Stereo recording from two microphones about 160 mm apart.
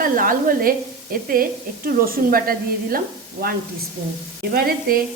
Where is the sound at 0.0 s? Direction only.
60° right (ahead or behind).